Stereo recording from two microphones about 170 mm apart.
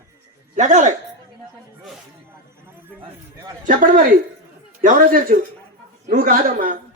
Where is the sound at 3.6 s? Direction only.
50° right (ahead or behind).